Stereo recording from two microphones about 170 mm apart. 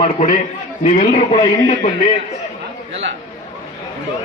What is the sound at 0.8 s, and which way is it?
Speech, 40° left (ahead or behind).